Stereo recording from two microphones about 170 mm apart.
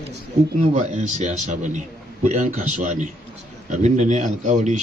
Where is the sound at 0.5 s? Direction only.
45° right (ahead or behind).